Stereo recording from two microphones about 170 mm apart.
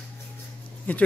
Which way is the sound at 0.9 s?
10° left (ahead or behind).